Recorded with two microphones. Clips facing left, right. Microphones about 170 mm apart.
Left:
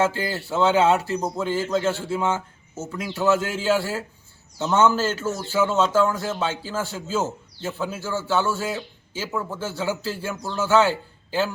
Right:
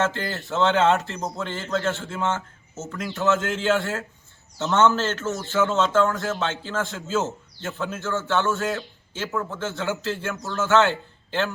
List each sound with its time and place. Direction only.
0.0 s a man's voice: 10° left (ahead or behind)